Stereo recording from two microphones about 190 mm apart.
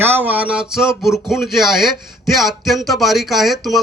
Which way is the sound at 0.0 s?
10° right (ahead or behind).